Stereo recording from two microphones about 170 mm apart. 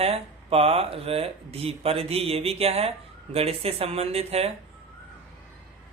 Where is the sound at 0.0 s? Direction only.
35° right (ahead or behind).